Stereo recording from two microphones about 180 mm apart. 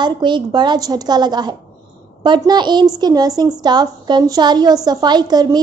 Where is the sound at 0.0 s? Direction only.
25° right (ahead or behind).